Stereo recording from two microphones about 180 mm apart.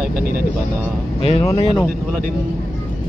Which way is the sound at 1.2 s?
30° left (ahead or behind).